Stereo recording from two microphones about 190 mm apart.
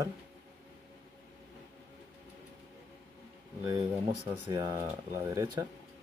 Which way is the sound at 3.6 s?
20° right (ahead or behind).